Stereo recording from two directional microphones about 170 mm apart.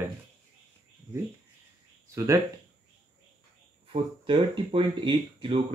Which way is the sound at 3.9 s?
30° right (ahead or behind).